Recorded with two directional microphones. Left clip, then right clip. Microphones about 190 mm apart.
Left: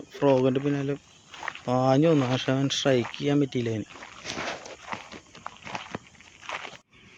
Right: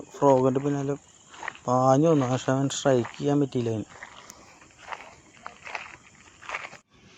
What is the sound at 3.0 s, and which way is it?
Speech, 30° right (ahead or behind).